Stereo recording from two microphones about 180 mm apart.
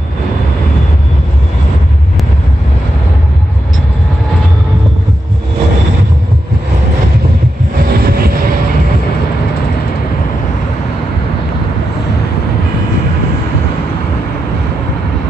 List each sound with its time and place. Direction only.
7.9 s train: 60° right (ahead or behind)